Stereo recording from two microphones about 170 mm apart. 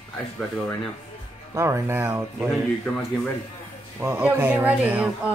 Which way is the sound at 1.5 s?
15° right (ahead or behind).